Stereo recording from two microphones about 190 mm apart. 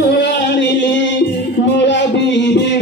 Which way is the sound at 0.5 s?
70° left (ahead or behind).